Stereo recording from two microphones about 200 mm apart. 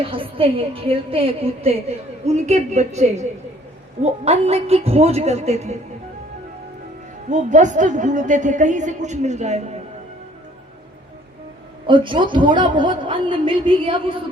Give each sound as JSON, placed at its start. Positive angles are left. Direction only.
{"t": 0.0, "sound": "a woman's voice", "side_deg": -25}
{"t": 7.3, "sound": "a woman's voice", "side_deg": -35}
{"t": 11.9, "sound": "a woman's voice", "side_deg": -25}